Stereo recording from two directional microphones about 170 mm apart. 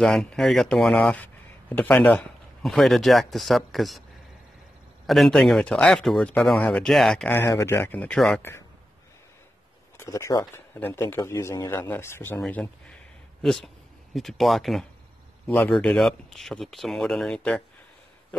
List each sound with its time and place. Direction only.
0.0 s speech: 5° left (ahead or behind)
5.0 s speech: centre (ahead or behind)
7.3 s a man's voice: 15° left (ahead or behind)
9.9 s a man's voice: 15° left (ahead or behind)